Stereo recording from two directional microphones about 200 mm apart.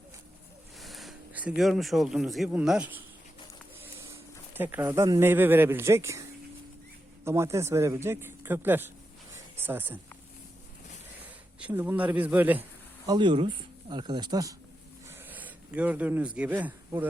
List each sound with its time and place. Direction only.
0.8 s speech: centre (ahead or behind)
4.0 s speech: 10° right (ahead or behind)
7.3 s speech: 15° right (ahead or behind)
9.3 s a sound: 10° right (ahead or behind)
11.6 s speech: 10° right (ahead or behind)
13.1 s speech: 25° right (ahead or behind)
15.3 s speech: 10° right (ahead or behind)